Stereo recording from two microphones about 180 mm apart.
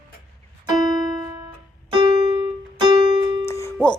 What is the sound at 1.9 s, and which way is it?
Music, 25° right (ahead or behind).